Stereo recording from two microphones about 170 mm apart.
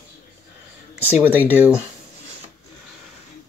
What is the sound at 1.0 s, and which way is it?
Speech, 10° right (ahead or behind).